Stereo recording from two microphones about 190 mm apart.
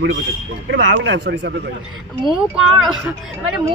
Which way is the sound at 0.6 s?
70° right (ahead or behind).